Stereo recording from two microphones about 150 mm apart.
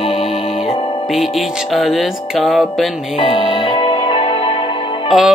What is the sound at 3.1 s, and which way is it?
Music, 40° left (ahead or behind).